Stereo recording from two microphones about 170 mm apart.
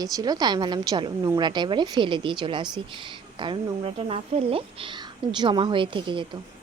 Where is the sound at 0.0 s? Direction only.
20° right (ahead or behind).